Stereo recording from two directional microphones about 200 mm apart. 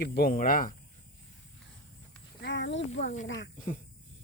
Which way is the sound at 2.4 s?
65° left (ahead or behind).